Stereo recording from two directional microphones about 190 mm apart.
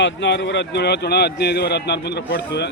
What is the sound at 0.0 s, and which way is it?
A man's voice, 70° left (ahead or behind).